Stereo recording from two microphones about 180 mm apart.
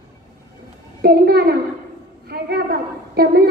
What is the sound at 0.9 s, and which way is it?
Speech, 60° right (ahead or behind).